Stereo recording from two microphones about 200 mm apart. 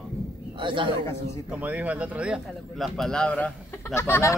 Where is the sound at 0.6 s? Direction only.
25° right (ahead or behind).